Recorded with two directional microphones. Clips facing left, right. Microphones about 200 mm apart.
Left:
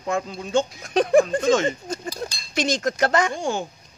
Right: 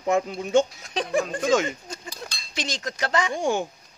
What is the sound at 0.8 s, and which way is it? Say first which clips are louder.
Speech: left 8 dB; 50° left (ahead or behind).